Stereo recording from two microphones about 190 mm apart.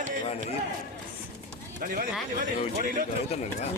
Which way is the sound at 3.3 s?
35° left (ahead or behind).